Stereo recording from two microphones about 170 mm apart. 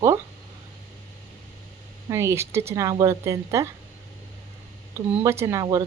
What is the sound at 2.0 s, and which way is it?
Speech, 15° right (ahead or behind).